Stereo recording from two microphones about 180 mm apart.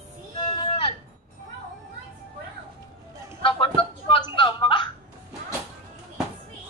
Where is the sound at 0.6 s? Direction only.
30° left (ahead or behind).